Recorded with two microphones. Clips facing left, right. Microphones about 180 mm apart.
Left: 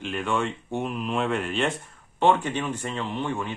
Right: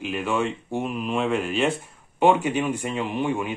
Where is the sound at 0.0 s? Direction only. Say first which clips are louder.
Right 2 dB; 5° right (ahead or behind).